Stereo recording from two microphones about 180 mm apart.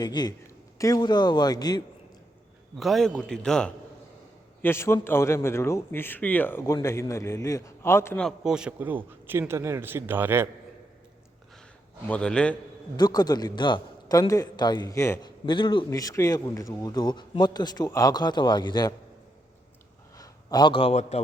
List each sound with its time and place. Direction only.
0.0 s a man's voice: 25° left (ahead or behind)
2.7 s a man's voice: centre (ahead or behind)
4.6 s a man's voice: 15° left (ahead or behind)
8.4 s a man's voice: 5° right (ahead or behind)
12.0 s a man's voice: 5° left (ahead or behind)
13.0 s a man's voice: 20° left (ahead or behind)
20.1 s a man's voice: 20° left (ahead or behind)